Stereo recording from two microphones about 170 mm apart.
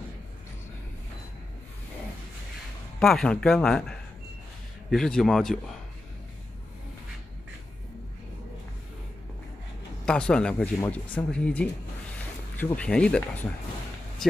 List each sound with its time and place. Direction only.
3.0 s speech: 5° left (ahead or behind)
4.9 s speech: 5° left (ahead or behind)
10.0 s speech: 5° left (ahead or behind)